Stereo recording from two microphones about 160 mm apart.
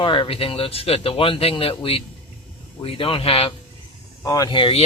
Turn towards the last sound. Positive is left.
turn(degrees=30)  # may be behind; listen again after turning